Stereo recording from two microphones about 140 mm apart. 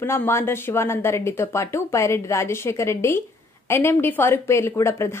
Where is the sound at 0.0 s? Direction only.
15° left (ahead or behind).